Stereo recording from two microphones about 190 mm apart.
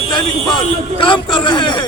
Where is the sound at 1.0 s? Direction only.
25° left (ahead or behind).